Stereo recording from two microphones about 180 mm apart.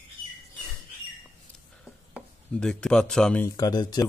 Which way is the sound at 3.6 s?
20° left (ahead or behind).